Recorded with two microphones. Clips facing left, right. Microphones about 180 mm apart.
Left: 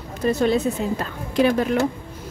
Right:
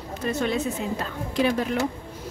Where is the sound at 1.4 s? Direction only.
55° left (ahead or behind).